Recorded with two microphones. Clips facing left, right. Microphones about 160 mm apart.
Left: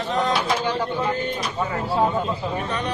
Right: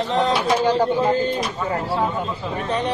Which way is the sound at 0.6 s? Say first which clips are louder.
Right 6 dB; 40° right (ahead or behind).